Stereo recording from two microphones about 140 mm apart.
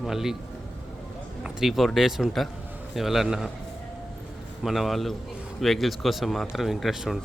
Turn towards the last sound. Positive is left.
turn(degrees=0)  # may be behind; listen again after turning